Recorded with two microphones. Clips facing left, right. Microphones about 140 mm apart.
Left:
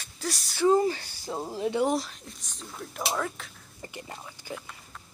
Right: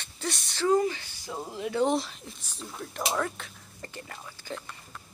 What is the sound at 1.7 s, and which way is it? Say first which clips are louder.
Speech: right 2 dB; centre (ahead or behind).